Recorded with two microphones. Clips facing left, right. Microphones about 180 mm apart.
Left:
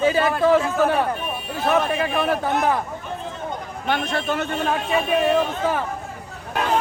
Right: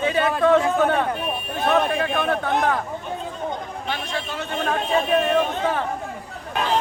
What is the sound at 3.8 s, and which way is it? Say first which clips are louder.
Speech: left 8 dB; 60° left (ahead or behind).